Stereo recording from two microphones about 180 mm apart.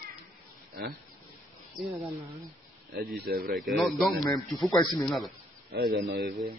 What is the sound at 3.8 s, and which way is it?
Speech, centre (ahead or behind).